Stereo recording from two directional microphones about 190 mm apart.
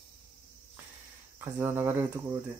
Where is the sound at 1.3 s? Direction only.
15° right (ahead or behind).